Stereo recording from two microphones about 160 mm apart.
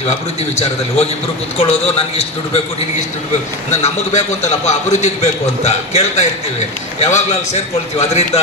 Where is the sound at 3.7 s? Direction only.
45° left (ahead or behind).